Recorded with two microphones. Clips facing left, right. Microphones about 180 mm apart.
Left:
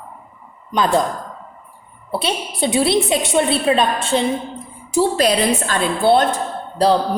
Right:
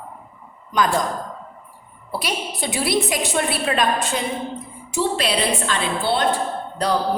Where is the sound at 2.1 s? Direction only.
25° left (ahead or behind).